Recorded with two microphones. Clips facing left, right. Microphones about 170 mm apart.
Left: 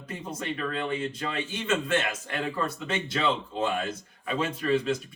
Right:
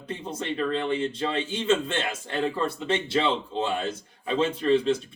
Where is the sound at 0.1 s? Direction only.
30° right (ahead or behind).